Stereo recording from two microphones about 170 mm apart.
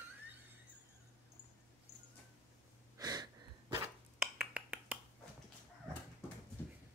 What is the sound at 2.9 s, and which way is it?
Wheeze, 25° right (ahead or behind).